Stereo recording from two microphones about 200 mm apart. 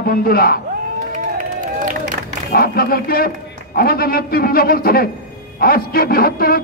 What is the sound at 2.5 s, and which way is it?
A man's voice, 50° left (ahead or behind).